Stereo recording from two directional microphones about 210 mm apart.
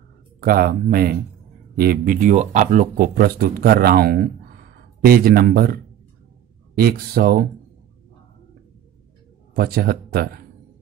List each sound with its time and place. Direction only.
0.4 s speech: 45° right (ahead or behind)
6.8 s speech: 45° right (ahead or behind)
9.5 s speech: 45° right (ahead or behind)